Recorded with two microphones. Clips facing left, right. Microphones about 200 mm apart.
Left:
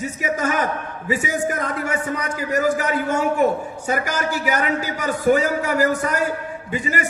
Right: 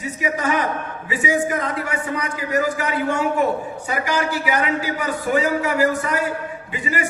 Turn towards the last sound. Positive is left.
turn(degrees=45)  # may be behind; listen again after turning